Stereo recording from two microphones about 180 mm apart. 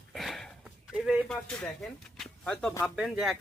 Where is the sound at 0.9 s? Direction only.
Centre (ahead or behind).